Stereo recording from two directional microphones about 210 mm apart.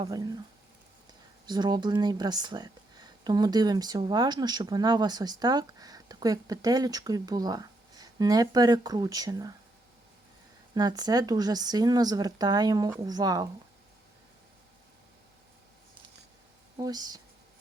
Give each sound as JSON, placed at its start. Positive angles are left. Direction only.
{"t": 0.1, "sound": "speech", "side_deg": -15}
{"t": 1.5, "sound": "speech", "side_deg": -20}
{"t": 10.8, "sound": "speech", "side_deg": -20}
{"t": 16.7, "sound": "speech", "side_deg": -20}